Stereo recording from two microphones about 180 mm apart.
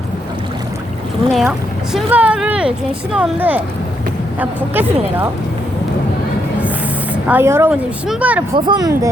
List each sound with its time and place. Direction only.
1.3 s speech: centre (ahead or behind)
7.3 s speech: 10° right (ahead or behind)
8.5 s speech: 25° right (ahead or behind)